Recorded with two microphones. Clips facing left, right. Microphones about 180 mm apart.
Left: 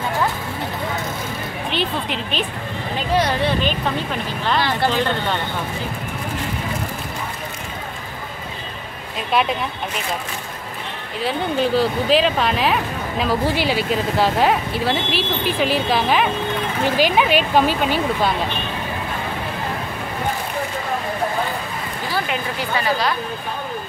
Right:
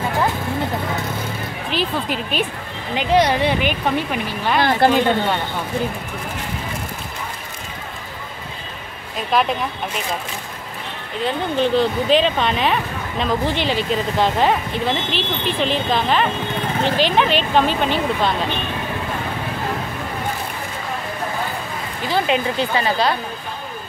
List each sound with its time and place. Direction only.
1.7 s speech: 5° right (ahead or behind)
3.1 s speech: 15° right (ahead or behind)
4.6 s speech: 50° right (ahead or behind)
11.2 s speech: 5° left (ahead or behind)
22.1 s speech: 25° right (ahead or behind)